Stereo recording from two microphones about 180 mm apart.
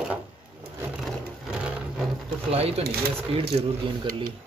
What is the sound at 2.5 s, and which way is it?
Speech, 35° right (ahead or behind).